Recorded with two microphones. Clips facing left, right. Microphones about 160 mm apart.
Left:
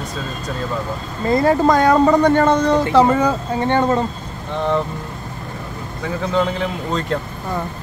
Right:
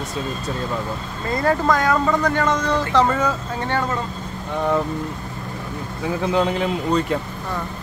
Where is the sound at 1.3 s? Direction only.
25° left (ahead or behind).